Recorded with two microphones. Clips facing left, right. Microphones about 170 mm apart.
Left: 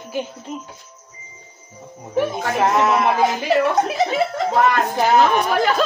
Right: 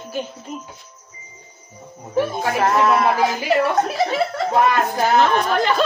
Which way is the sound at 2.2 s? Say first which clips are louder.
Even; 15° left (ahead or behind).